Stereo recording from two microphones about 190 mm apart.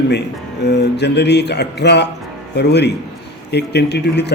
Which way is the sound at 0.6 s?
65° left (ahead or behind).